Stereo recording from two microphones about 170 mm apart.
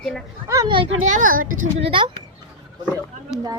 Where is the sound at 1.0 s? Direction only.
50° right (ahead or behind).